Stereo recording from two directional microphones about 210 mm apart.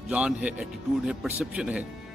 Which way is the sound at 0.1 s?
5° right (ahead or behind).